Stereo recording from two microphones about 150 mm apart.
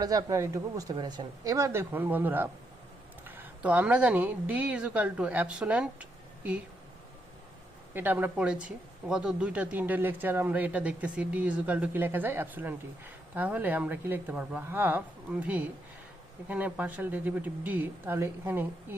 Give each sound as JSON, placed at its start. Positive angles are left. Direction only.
{"t": 0.0, "sound": "speech", "side_deg": -25}
{"t": 7.9, "sound": "speech", "side_deg": -15}